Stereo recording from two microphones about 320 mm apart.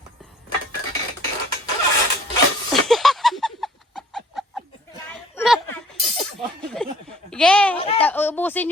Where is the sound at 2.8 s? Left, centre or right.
Centre.